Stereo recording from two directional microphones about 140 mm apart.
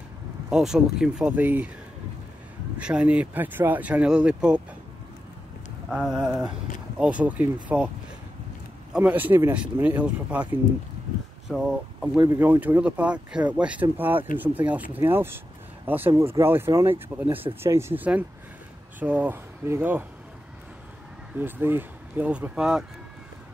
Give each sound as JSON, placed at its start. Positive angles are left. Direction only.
{"t": 0.5, "sound": "speech", "side_deg": -5}
{"t": 2.8, "sound": "speech", "side_deg": -10}
{"t": 5.9, "sound": "speech", "side_deg": -5}
{"t": 8.9, "sound": "speech", "side_deg": -10}
{"t": 11.4, "sound": "speech", "side_deg": -5}
{"t": 21.4, "sound": "speech", "side_deg": -15}